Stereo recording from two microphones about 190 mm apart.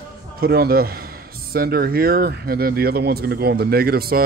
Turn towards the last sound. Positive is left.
turn(degrees=-55)  # may be behind; listen again after turning